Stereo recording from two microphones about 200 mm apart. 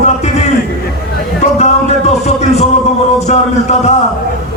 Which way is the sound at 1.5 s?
35° left (ahead or behind).